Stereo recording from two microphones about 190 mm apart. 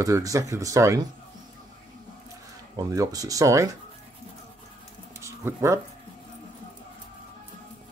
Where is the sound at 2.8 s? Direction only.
20° right (ahead or behind).